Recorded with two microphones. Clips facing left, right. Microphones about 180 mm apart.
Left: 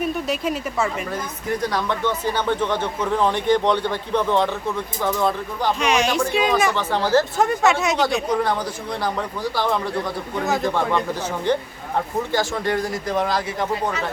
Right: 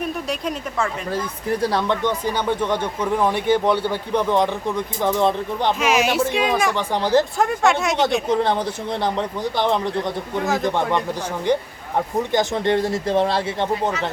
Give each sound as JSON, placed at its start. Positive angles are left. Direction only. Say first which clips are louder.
{"t": 0.0, "sound": "speech", "louder": "left 2 dB", "side_deg": 5}
{"t": 1.6, "sound": "speech", "louder": "right 4 dB", "side_deg": -30}
{"t": 2.0, "sound": "speech", "louder": "even", "side_deg": -10}
{"t": 5.8, "sound": "speech", "louder": "right 1 dB", "side_deg": -5}
{"t": 6.7, "sound": "speech", "louder": "right 1 dB", "side_deg": -15}
{"t": 7.3, "sound": "speech", "louder": "even", "side_deg": 0}
{"t": 8.3, "sound": "speech", "louder": "right 2 dB", "side_deg": -25}
{"t": 10.3, "sound": "speech", "louder": "even", "side_deg": 0}
{"t": 10.6, "sound": "speech", "louder": "even", "side_deg": -20}